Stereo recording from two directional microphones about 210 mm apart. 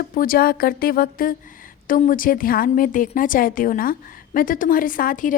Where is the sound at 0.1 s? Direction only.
45° left (ahead or behind).